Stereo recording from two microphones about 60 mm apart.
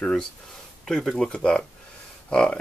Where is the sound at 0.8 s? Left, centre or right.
Centre.